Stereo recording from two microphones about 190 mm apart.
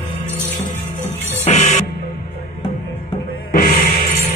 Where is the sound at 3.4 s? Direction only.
45° left (ahead or behind).